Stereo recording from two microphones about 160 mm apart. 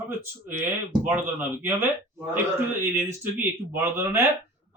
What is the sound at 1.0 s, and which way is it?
Speech, 15° right (ahead or behind).